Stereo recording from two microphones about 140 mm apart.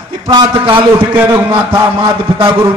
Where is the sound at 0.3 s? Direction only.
35° right (ahead or behind).